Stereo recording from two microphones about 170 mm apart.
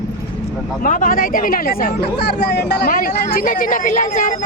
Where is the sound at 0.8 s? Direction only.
50° left (ahead or behind).